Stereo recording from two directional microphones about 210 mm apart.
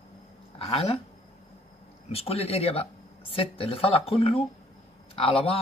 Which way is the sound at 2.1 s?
30° left (ahead or behind).